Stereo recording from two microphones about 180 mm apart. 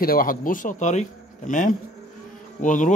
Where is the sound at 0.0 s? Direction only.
55° left (ahead or behind).